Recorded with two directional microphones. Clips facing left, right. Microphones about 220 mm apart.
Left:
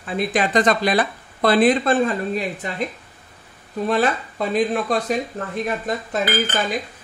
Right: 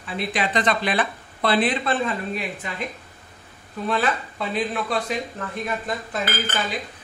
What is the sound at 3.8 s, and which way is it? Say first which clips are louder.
Speech: left 4 dB; 40° left (ahead or behind).